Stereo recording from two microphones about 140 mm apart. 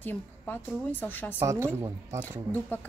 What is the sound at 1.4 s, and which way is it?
Speech, 20° right (ahead or behind).